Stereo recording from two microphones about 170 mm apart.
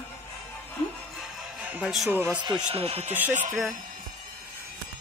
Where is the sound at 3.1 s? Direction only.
10° right (ahead or behind).